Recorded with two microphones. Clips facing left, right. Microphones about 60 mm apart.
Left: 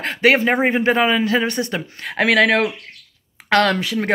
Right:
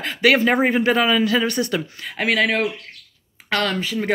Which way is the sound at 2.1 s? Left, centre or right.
Left.